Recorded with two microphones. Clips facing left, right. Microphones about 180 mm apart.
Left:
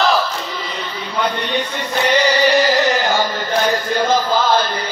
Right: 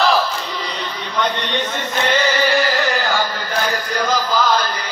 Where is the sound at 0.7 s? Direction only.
10° left (ahead or behind).